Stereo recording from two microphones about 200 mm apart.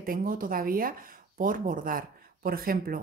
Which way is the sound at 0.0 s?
45° right (ahead or behind).